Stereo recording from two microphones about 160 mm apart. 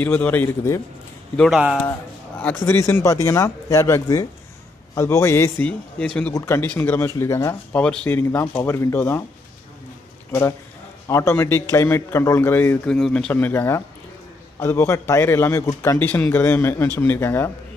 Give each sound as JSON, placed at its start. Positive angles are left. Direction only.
{"t": 0.0, "sound": "speech", "side_deg": 10}
{"t": 1.3, "sound": "speech", "side_deg": 5}
{"t": 11.1, "sound": "speech", "side_deg": 15}